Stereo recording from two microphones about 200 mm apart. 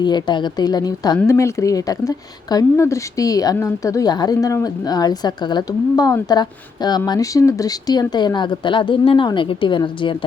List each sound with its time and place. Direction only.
0.0 s speech: 20° left (ahead or behind)